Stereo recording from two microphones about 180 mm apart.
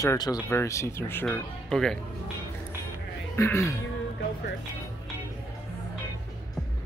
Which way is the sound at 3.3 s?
15° left (ahead or behind).